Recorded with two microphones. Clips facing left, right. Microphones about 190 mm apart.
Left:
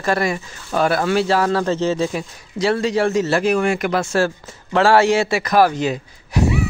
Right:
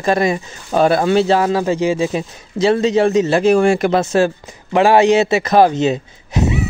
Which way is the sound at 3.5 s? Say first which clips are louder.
Right 5 dB; 30° right (ahead or behind).